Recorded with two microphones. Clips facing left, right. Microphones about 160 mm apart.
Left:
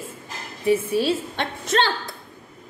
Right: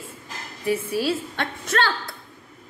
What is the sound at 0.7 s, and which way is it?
A woman's voice, 25° left (ahead or behind).